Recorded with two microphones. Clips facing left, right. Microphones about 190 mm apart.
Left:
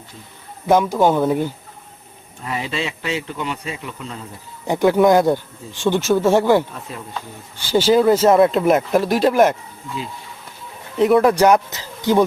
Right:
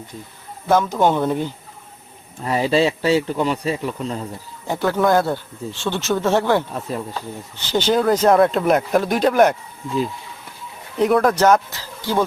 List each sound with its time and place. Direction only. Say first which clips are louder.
0.7 s speech: left 2 dB; 15° left (ahead or behind)
0.9 s speech: left 2 dB; 5° left (ahead or behind)
2.4 s speech: right 8 dB; 35° right (ahead or behind)
4.6 s speech: left 5 dB; 15° left (ahead or behind)
6.7 s speech: right 6 dB; 40° right (ahead or behind)
7.5 s speech: left 4 dB; 10° left (ahead or behind)
10.9 s speech: left 3 dB; centre (ahead or behind); by 12.2 s 20° left (ahead or behind)